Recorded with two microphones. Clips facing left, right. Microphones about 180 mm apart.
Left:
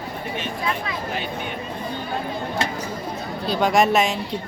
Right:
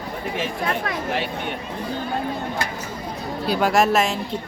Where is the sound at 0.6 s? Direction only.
55° right (ahead or behind).